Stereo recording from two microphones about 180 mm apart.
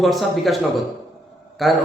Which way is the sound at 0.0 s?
Centre (ahead or behind).